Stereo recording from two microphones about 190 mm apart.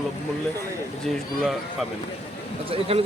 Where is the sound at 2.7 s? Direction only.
30° right (ahead or behind).